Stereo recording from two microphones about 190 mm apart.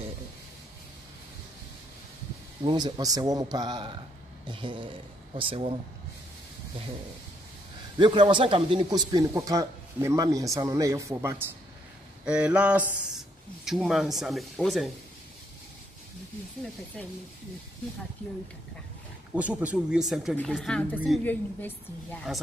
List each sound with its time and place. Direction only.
2.6 s a man's voice: 25° right (ahead or behind)
8.0 s speech: 25° right (ahead or behind); by 14.9 s centre (ahead or behind)
16.6 s speech: centre (ahead or behind)
19.3 s a woman's voice: 5° right (ahead or behind)